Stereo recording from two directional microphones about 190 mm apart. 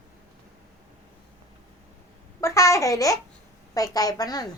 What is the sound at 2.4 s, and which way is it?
Babbling, 15° left (ahead or behind).